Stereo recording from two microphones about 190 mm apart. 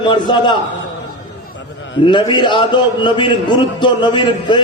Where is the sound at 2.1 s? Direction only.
25° left (ahead or behind).